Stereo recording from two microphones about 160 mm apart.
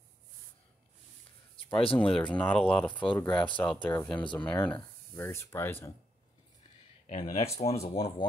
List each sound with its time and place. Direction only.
1.6 s a sound: 35° left (ahead or behind)
2.0 s speech: 5° left (ahead or behind)
2.9 s speech: 30° left (ahead or behind)
3.2 s speech: 10° left (ahead or behind)
7.1 s speech: 45° left (ahead or behind)